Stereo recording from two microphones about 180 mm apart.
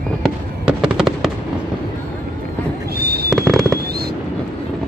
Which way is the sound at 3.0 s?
60° right (ahead or behind).